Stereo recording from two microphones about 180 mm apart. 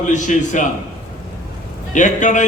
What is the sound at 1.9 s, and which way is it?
Speech, 45° left (ahead or behind).